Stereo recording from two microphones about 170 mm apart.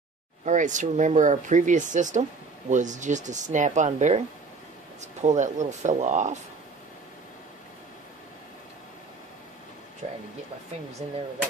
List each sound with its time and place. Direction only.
0.5 s speech: 45° right (ahead or behind)
10.0 s speech: 40° right (ahead or behind)